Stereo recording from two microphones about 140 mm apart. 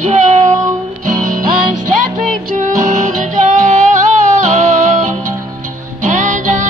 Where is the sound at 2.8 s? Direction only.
60° right (ahead or behind).